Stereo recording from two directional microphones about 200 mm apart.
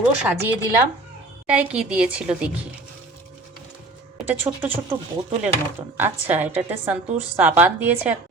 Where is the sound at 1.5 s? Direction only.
5° right (ahead or behind).